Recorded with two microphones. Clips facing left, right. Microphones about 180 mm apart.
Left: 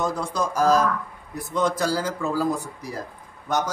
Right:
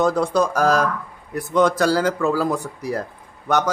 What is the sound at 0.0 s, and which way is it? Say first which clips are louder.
Speech: right 7 dB; 70° right (ahead or behind).